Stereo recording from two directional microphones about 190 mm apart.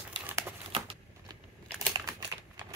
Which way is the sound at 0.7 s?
25° right (ahead or behind).